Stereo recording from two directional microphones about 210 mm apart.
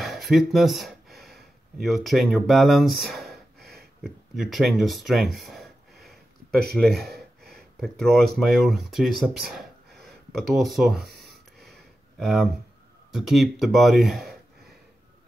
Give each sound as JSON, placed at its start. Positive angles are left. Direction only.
{"t": 0.0, "sound": "speech", "side_deg": 0}
{"t": 3.1, "sound": "gasp", "side_deg": 0}
{"t": 3.5, "sound": "a sound", "side_deg": -50}
{"t": 4.0, "sound": "speech", "side_deg": 0}
{"t": 12.2, "sound": "speech", "side_deg": 0}